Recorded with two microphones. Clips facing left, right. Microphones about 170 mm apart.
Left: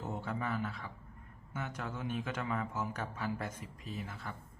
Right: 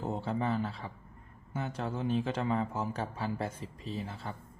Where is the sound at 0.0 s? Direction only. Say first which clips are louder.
Right 5 dB; 30° right (ahead or behind).